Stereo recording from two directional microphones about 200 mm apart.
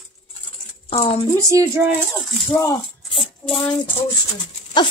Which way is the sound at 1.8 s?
10° right (ahead or behind).